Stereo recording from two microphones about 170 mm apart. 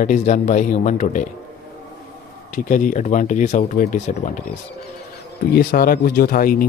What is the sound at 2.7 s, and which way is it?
Speech, 50° left (ahead or behind).